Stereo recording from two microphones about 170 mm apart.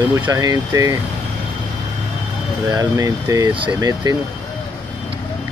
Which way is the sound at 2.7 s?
20° right (ahead or behind).